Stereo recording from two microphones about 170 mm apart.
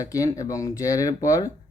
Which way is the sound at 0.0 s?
20° left (ahead or behind).